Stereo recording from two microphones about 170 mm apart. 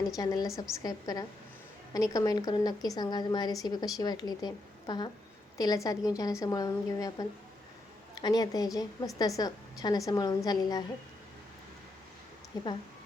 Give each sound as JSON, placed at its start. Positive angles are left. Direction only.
{"t": 0.2, "sound": "a woman's voice", "side_deg": 25}
{"t": 12.5, "sound": "a woman's voice", "side_deg": 25}